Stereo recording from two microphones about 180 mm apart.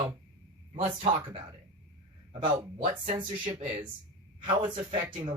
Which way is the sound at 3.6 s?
35° right (ahead or behind).